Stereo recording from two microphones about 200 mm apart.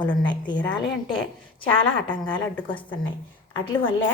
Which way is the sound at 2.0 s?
25° left (ahead or behind).